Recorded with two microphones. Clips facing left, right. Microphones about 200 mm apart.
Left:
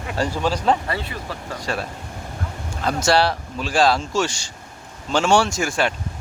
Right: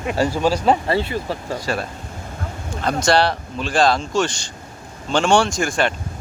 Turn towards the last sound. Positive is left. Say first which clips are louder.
# right 2 dB
turn(degrees=5)  # may be behind; listen again after turning